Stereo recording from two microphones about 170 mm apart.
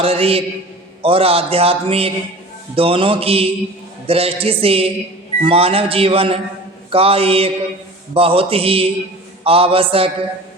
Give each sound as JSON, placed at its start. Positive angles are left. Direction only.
{"t": 0.0, "sound": "a man's voice", "side_deg": -35}